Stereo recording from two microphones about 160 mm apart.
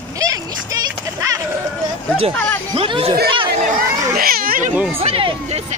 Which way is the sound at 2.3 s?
10° left (ahead or behind).